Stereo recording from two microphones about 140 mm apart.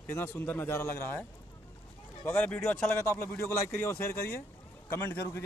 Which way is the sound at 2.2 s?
10° left (ahead or behind).